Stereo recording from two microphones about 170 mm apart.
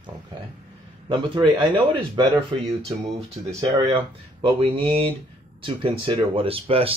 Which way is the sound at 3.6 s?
30° right (ahead or behind).